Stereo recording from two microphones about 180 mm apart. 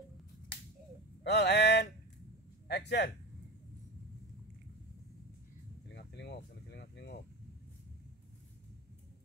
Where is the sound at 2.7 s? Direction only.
70° left (ahead or behind).